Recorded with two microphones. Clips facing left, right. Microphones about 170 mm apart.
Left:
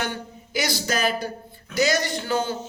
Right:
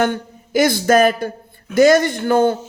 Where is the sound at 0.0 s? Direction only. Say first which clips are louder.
Right 11 dB; 50° right (ahead or behind).